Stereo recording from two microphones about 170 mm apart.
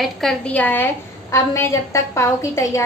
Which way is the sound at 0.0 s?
Centre (ahead or behind).